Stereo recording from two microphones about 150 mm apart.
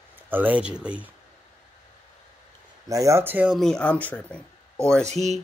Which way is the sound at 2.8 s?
20° right (ahead or behind).